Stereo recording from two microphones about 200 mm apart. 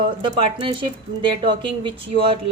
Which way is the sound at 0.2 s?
25° right (ahead or behind).